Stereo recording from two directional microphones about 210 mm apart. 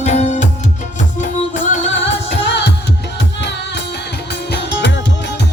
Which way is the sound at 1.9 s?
60° left (ahead or behind).